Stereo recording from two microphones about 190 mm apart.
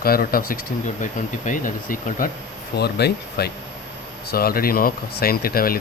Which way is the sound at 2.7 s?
60° left (ahead or behind).